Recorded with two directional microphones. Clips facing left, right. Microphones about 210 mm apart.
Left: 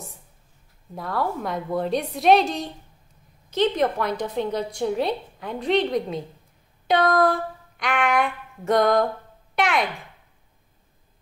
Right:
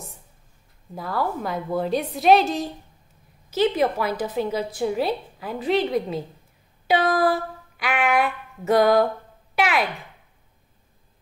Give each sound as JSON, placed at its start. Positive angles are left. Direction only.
{"t": 0.9, "sound": "a woman's voice", "side_deg": 0}